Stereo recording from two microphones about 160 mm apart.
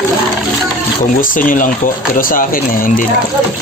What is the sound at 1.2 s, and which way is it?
Speech, 60° left (ahead or behind).